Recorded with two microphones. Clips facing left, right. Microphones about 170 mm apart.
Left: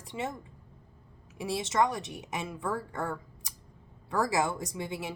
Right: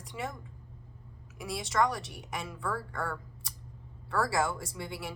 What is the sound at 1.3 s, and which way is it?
A woman's voice, 25° left (ahead or behind).